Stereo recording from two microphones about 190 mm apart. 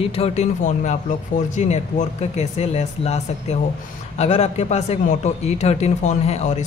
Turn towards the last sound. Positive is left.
turn(degrees=35)  # may be behind; listen again after turning